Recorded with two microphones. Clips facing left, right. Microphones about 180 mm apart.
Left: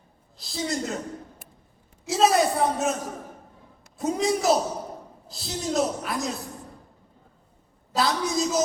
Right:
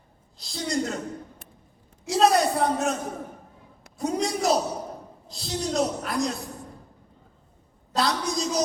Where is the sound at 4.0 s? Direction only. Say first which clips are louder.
Left 2 dB; centre (ahead or behind).